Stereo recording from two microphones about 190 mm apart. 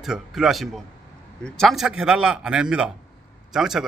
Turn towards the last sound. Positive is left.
turn(degrees=0)  # may be behind; listen again after turning